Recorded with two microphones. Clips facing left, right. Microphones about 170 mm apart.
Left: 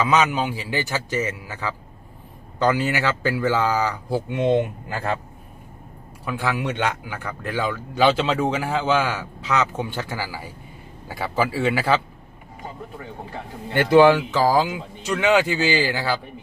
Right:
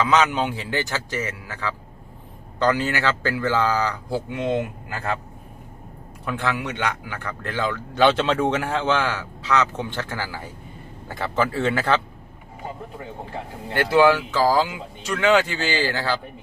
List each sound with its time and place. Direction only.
0.0 s speech: 10° left (ahead or behind)
6.2 s speech: 10° left (ahead or behind)
13.7 s speech: 25° left (ahead or behind)